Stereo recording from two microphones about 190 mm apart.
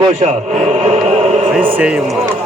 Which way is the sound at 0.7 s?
35° right (ahead or behind).